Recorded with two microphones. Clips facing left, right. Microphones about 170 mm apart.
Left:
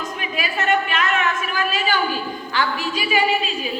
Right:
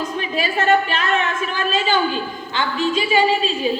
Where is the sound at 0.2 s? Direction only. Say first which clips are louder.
Right 4 dB; 30° right (ahead or behind).